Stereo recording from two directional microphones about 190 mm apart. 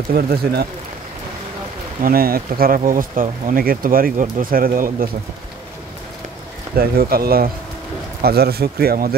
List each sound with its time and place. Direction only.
0.1 s speech: 55° right (ahead or behind)
2.0 s speech: 50° right (ahead or behind)
6.8 s speech: 50° right (ahead or behind)